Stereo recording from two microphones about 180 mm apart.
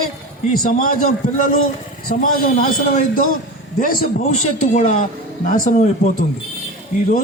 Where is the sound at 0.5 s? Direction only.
55° left (ahead or behind).